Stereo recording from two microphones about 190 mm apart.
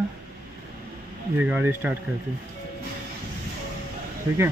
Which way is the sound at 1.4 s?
10° right (ahead or behind).